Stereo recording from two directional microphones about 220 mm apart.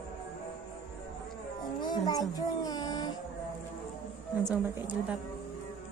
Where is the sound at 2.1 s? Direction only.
15° left (ahead or behind).